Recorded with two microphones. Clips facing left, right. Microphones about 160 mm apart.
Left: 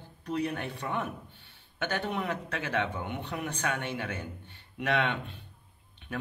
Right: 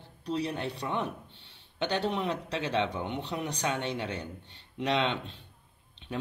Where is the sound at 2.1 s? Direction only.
20° right (ahead or behind).